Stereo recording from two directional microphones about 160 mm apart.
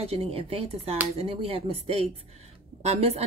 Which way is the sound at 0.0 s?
40° right (ahead or behind).